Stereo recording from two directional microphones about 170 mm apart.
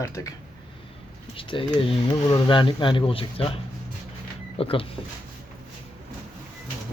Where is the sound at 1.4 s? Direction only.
30° left (ahead or behind).